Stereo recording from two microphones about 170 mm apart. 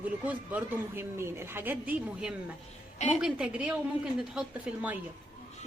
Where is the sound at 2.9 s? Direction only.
40° left (ahead or behind).